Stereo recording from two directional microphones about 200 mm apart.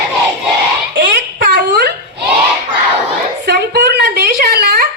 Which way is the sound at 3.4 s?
55° right (ahead or behind).